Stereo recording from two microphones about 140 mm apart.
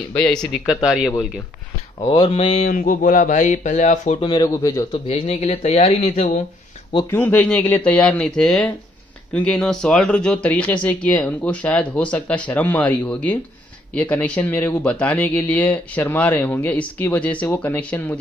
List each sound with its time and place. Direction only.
0.1 s speech: 5° left (ahead or behind)
2.0 s speech: 40° left (ahead or behind)
2.6 s speech: 75° left (ahead or behind)
4.2 s speech: 30° left (ahead or behind)
4.9 s speech: 45° left (ahead or behind)
7.1 s speech: 10° left (ahead or behind)